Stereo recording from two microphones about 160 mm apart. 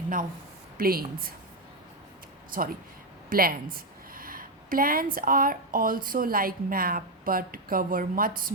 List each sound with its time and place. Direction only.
0.8 s a woman's voice: 65° right (ahead or behind)
2.5 s a woman's voice: 60° right (ahead or behind)